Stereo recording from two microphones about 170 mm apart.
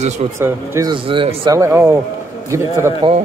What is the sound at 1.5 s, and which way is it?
A man's voice, 15° right (ahead or behind).